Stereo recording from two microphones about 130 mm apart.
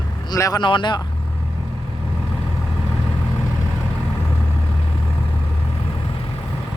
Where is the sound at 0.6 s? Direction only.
35° left (ahead or behind).